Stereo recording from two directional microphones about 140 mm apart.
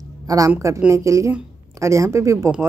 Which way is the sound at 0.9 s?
20° right (ahead or behind).